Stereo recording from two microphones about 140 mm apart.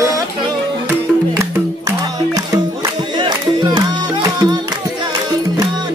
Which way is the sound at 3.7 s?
30° right (ahead or behind).